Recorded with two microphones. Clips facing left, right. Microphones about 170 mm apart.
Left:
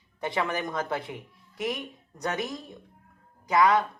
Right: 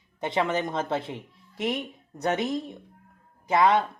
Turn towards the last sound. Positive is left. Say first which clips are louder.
# right 1 dB
turn(degrees=-25)  # may be behind; listen again after turning